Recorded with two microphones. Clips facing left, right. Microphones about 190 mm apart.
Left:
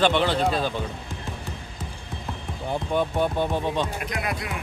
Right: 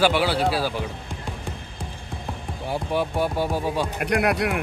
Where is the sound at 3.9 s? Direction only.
65° right (ahead or behind).